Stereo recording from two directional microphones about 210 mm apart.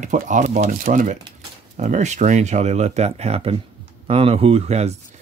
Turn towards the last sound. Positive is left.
turn(degrees=-30)  # may be behind; listen again after turning